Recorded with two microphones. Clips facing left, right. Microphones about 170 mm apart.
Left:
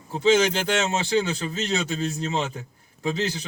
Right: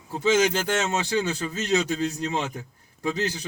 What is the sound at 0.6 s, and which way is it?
Speech, 20° left (ahead or behind).